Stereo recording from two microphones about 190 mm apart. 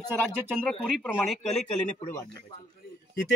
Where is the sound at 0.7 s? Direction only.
Centre (ahead or behind).